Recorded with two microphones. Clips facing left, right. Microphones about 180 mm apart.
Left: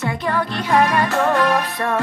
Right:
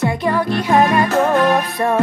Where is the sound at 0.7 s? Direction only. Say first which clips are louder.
Right 3 dB; 25° right (ahead or behind).